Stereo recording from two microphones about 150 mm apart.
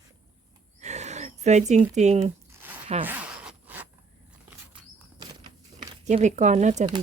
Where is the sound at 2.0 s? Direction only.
50° right (ahead or behind).